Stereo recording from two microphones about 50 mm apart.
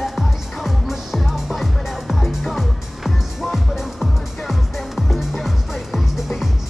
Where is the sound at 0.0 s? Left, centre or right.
Centre.